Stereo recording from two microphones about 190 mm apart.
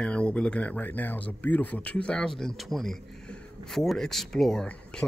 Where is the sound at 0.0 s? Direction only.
5° left (ahead or behind).